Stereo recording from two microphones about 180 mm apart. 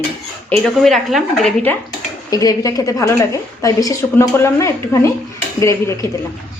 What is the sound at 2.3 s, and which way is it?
A woman's voice, 20° left (ahead or behind).